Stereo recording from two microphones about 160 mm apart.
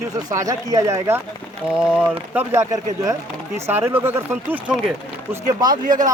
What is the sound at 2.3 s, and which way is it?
Speech, 20° right (ahead or behind).